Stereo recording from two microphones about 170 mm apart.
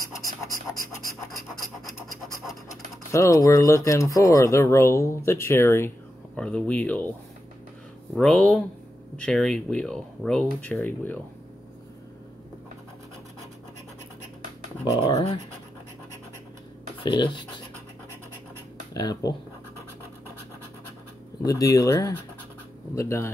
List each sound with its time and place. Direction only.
0.5 s pant: 20° left (ahead or behind)
2.0 s scratch: 20° left (ahead or behind)
3.1 s speech: 20° left (ahead or behind)
14.9 s speech: 30° left (ahead or behind)
17.0 s speech: 25° left (ahead or behind)
18.9 s speech: 20° left (ahead or behind)
21.5 s speech: 20° left (ahead or behind)